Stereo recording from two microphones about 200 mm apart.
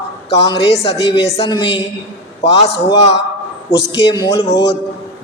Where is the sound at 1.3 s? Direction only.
25° left (ahead or behind).